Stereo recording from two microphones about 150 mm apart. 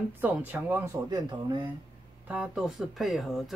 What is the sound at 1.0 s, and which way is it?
Speech, 25° right (ahead or behind).